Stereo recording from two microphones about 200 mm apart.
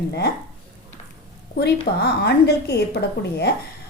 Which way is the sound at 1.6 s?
55° left (ahead or behind).